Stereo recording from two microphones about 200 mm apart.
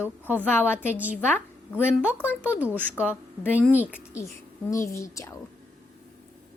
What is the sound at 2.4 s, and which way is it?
Speech, 10° right (ahead or behind).